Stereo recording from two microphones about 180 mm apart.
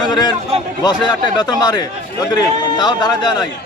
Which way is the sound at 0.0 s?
25° left (ahead or behind).